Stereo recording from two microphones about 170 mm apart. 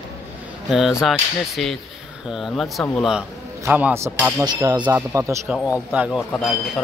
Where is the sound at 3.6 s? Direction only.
15° right (ahead or behind).